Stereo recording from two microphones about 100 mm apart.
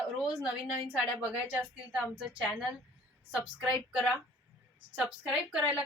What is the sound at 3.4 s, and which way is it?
Speech, 10° right (ahead or behind).